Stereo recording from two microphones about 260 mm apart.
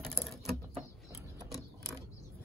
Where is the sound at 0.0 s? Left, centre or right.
Centre.